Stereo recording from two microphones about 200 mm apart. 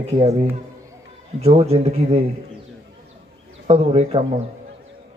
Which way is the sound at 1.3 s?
30° right (ahead or behind).